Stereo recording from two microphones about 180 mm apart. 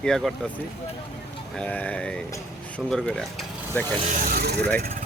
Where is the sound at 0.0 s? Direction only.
Centre (ahead or behind).